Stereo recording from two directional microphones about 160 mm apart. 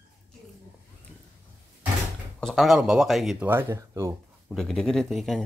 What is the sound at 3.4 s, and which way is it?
Speech, 15° right (ahead or behind).